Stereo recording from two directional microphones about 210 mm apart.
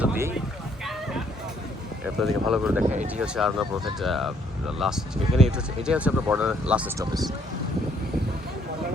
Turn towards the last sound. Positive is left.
turn(degrees=-5)  # may be behind; listen again after turning